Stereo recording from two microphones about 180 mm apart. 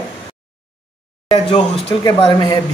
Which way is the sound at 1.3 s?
25° left (ahead or behind).